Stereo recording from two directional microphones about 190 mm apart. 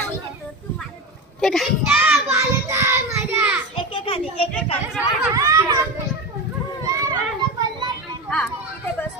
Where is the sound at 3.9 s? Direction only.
30° left (ahead or behind).